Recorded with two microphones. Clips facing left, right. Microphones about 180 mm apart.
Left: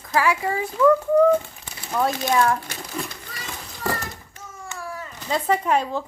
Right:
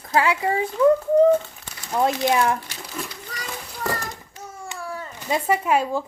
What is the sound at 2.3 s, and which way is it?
Speech, 20° right (ahead or behind).